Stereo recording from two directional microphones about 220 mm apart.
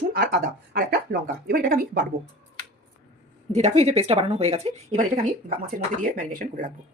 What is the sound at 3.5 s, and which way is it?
Speech, 30° right (ahead or behind).